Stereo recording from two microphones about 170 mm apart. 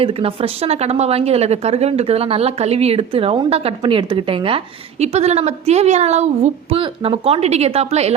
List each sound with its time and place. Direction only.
0.0 s speech: 35° right (ahead or behind)